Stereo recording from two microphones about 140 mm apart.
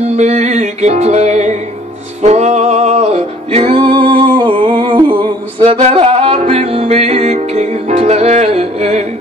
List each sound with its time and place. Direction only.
0.1 s music: 55° right (ahead or behind)